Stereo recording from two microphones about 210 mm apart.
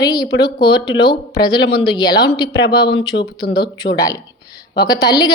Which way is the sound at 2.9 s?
55° left (ahead or behind).